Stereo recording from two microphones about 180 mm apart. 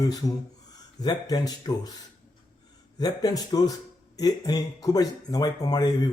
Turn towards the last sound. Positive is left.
turn(degrees=20)  # may be behind; listen again after turning